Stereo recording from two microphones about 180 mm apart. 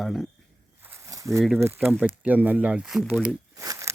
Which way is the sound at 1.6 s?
10° right (ahead or behind).